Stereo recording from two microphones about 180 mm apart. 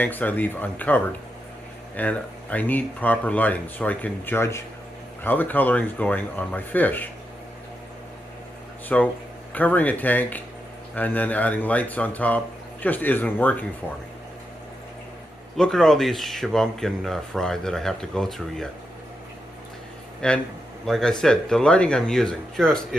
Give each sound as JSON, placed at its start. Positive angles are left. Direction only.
{"t": 0.0, "sound": "speech", "side_deg": 10}
{"t": 8.9, "sound": "speech", "side_deg": 5}
{"t": 15.5, "sound": "speech", "side_deg": 0}
{"t": 20.2, "sound": "speech", "side_deg": 5}